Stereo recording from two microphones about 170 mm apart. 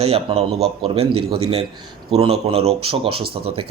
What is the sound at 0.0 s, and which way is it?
Speech, 35° right (ahead or behind).